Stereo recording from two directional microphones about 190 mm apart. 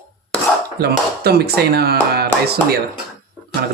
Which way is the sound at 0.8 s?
55° right (ahead or behind).